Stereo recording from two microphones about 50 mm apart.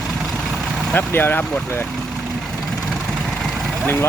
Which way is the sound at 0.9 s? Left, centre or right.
Left.